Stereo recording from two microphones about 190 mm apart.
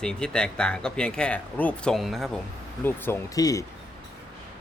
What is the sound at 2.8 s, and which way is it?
Speech, 10° left (ahead or behind).